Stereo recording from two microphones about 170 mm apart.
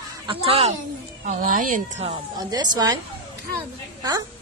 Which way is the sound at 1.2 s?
50° right (ahead or behind).